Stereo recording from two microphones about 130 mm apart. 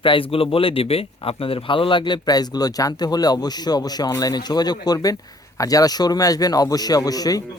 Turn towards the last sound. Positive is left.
turn(degrees=30)  # may be behind; listen again after turning